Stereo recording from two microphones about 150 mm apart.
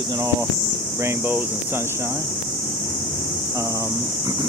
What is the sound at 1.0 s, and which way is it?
Speech, 15° right (ahead or behind).